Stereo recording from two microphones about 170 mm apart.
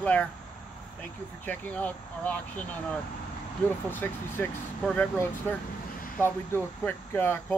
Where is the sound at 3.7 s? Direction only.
10° left (ahead or behind).